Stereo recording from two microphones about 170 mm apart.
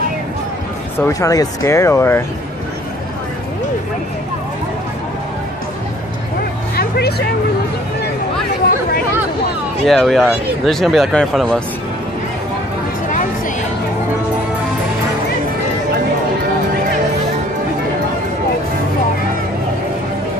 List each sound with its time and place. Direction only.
0.9 s speech: 15° left (ahead or behind)
6.8 s vehicle: 70° left (ahead or behind)
9.8 s speech: centre (ahead or behind)